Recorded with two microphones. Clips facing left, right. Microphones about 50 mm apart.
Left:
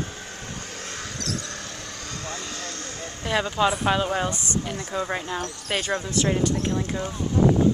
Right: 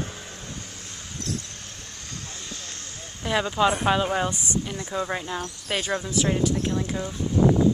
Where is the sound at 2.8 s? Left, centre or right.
Left.